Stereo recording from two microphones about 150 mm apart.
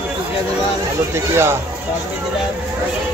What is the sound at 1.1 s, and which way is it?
Speech, 15° right (ahead or behind).